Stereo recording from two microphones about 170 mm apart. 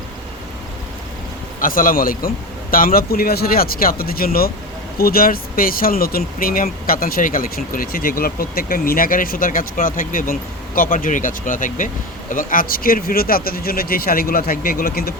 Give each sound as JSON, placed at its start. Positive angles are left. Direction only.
{"t": 1.5, "sound": "speech", "side_deg": 55}